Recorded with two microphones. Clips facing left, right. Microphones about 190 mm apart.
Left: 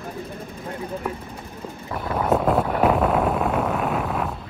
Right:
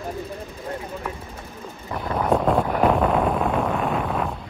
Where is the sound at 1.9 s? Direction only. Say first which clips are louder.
Even; 5° left (ahead or behind).